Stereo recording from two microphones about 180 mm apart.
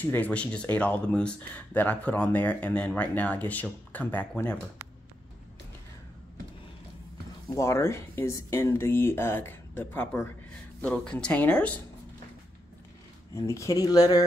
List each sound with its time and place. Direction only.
0.0 s speech: 10° left (ahead or behind)
7.5 s speech: 15° left (ahead or behind)
13.3 s speech: 15° left (ahead or behind)